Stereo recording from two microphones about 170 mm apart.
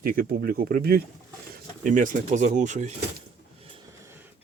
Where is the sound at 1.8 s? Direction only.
50° right (ahead or behind).